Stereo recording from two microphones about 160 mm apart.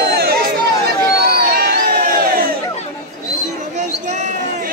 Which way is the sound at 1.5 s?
70° right (ahead or behind).